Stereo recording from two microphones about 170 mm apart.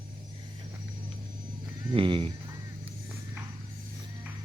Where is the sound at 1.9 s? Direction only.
30° right (ahead or behind).